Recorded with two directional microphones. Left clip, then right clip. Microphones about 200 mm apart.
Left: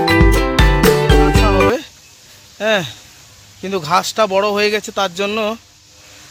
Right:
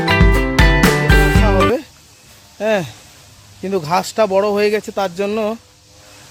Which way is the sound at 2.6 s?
5° right (ahead or behind).